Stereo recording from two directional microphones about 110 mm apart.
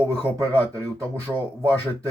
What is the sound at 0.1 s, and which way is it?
Speech, 20° left (ahead or behind).